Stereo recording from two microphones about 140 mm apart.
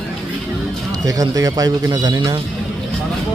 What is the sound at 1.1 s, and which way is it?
Speech, 25° right (ahead or behind).